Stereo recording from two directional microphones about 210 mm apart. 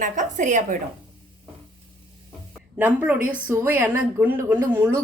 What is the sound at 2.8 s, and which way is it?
A woman's voice, 10° right (ahead or behind).